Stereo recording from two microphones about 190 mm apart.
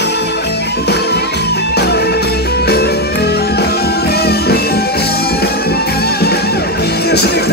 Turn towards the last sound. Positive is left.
turn(degrees=60)  # may be behind; listen again after turning